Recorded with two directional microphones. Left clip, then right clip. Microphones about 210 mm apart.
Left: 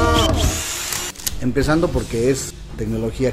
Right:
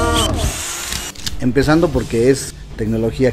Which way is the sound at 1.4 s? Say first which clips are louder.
Right 4 dB; 35° right (ahead or behind).